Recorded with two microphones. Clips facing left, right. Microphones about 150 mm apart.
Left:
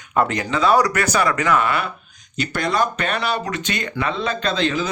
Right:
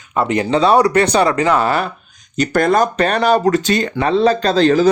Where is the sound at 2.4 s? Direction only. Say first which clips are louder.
Right 7 dB; 45° right (ahead or behind).